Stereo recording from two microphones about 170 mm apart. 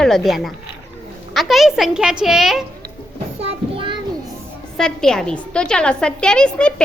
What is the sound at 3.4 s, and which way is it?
Child singing, 35° right (ahead or behind).